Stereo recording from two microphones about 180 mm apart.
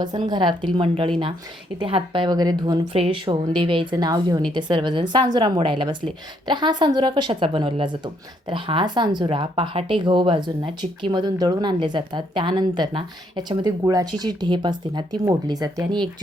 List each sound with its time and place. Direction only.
0.0 s speech: 25° right (ahead or behind)